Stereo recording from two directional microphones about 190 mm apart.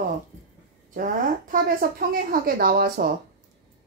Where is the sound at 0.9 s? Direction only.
45° right (ahead or behind).